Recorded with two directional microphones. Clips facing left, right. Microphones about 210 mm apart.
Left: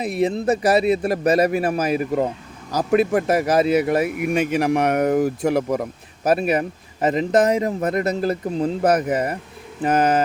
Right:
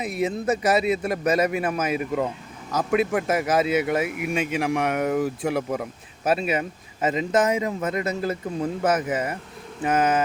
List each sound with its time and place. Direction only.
0.0 s speech: 35° left (ahead or behind)
8.4 s speech: 20° left (ahead or behind)
8.8 s speech: 40° left (ahead or behind)